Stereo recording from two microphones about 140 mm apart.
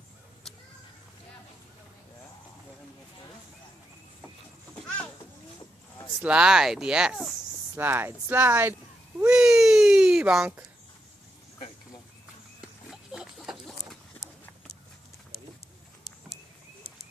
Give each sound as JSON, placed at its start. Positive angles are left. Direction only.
{"t": 4.7, "sound": "a sound", "side_deg": 10}
{"t": 6.2, "sound": "speech", "side_deg": -5}
{"t": 7.7, "sound": "speech", "side_deg": -15}
{"t": 9.3, "sound": "baby cry", "side_deg": -5}
{"t": 12.9, "sound": "pig", "side_deg": -5}